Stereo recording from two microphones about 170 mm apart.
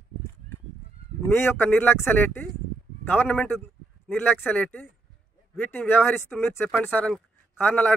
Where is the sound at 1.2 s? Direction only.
15° left (ahead or behind).